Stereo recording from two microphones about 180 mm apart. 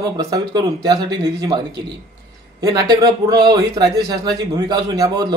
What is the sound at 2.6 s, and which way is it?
Speech, 20° right (ahead or behind).